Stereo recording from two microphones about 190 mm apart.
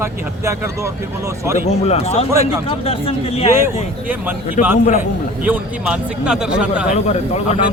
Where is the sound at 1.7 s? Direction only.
35° left (ahead or behind).